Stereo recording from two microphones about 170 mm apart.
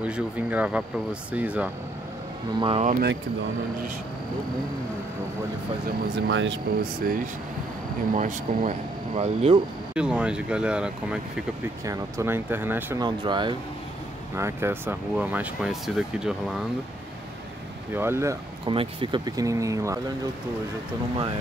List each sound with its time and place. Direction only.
0.0 s speech: 10° right (ahead or behind)
2.6 s speech: 40° right (ahead or behind)
6.1 s speech: 90° right
8.2 s speech: 45° right (ahead or behind)
9.9 s speech: 5° right (ahead or behind)
11.8 s speech: 15° right (ahead or behind)
13.0 s speech: 25° right (ahead or behind)
14.3 s speech: 15° right (ahead or behind)
17.9 s speech: 15° right (ahead or behind)
18.7 s speech: 30° right (ahead or behind)